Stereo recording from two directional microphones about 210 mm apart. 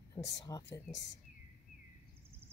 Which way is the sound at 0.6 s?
55° left (ahead or behind).